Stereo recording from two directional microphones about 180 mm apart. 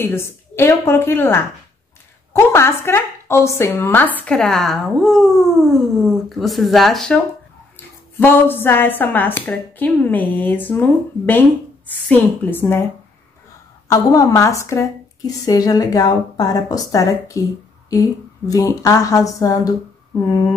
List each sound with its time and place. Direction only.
0.0 s a woman's voice: 15° left (ahead or behind)
13.8 s a woman's voice: 20° left (ahead or behind)